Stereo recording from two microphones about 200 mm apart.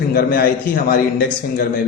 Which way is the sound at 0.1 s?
45° left (ahead or behind).